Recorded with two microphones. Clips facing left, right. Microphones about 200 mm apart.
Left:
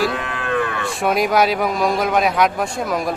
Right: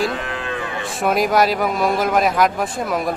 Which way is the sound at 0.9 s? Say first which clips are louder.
Right 3 dB; centre (ahead or behind).